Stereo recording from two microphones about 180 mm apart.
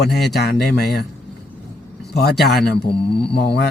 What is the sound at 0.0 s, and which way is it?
A man's voice, 65° left (ahead or behind).